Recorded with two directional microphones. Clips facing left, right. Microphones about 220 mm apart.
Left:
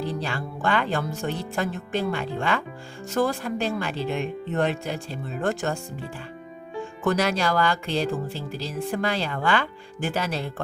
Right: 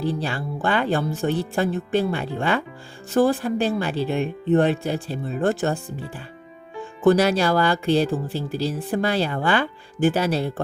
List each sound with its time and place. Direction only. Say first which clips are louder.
0.0 s speech: right 3 dB; 35° right (ahead or behind)